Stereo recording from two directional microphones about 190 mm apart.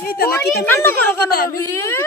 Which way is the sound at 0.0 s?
55° left (ahead or behind).